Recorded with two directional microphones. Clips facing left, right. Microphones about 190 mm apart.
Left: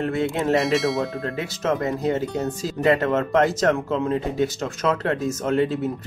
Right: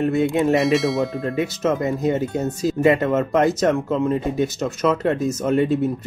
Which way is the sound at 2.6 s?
10° right (ahead or behind).